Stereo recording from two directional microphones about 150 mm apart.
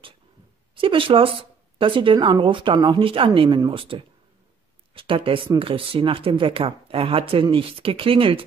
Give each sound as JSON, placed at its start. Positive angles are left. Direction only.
{"t": 0.7, "sound": "speech", "side_deg": -35}